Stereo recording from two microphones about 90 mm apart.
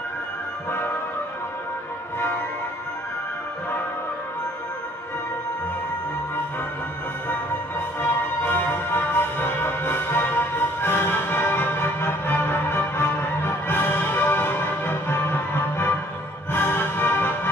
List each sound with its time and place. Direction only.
8.0 s music: 20° left (ahead or behind)